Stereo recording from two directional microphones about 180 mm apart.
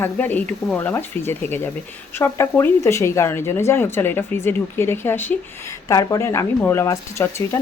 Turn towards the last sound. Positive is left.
turn(degrees=15)  # may be behind; listen again after turning